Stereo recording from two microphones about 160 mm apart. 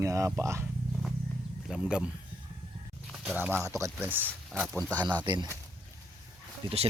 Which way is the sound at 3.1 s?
5° right (ahead or behind).